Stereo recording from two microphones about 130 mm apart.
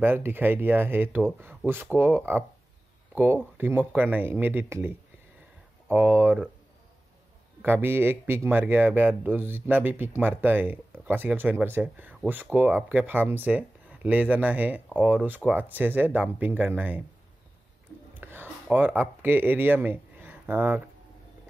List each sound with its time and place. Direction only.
0.0 s speech: 15° right (ahead or behind)
7.6 s speech: 15° right (ahead or behind)
18.1 s speech: 15° right (ahead or behind)